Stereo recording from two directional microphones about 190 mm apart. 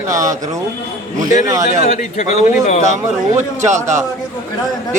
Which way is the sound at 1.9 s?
40° left (ahead or behind).